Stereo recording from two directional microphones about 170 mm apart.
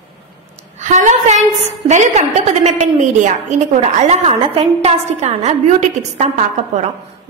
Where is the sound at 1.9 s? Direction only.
40° right (ahead or behind).